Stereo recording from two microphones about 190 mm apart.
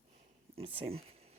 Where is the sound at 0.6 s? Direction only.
30° right (ahead or behind).